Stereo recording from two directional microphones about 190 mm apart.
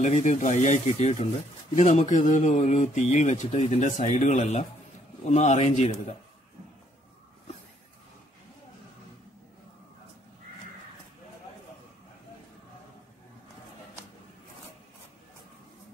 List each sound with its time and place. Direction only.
0.0 s speech: 40° left (ahead or behind)